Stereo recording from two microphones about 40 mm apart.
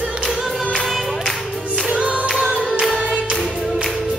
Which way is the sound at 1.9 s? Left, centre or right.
Right.